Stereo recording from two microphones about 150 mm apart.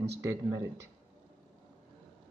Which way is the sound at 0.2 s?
20° right (ahead or behind).